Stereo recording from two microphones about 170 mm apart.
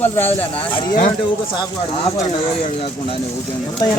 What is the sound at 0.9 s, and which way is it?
Speech, 50° left (ahead or behind).